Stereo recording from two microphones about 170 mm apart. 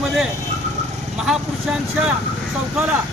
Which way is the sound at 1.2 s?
5° right (ahead or behind).